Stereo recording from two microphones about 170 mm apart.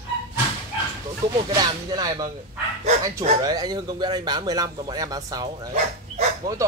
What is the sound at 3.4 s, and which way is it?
Speech, 25° right (ahead or behind).